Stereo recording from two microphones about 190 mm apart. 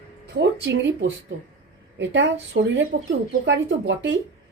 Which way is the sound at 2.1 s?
75° right (ahead or behind).